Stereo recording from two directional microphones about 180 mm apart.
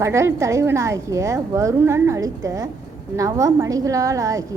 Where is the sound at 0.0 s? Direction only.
15° right (ahead or behind).